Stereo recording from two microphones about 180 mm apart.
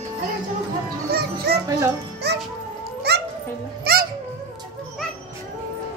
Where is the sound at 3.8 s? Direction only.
60° right (ahead or behind).